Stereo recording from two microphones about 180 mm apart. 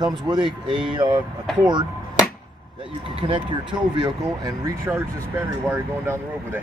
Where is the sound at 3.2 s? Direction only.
25° right (ahead or behind).